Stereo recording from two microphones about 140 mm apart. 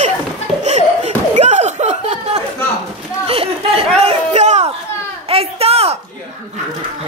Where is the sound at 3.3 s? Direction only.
45° right (ahead or behind).